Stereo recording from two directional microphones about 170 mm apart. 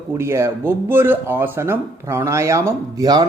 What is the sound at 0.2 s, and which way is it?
Speech, 15° right (ahead or behind).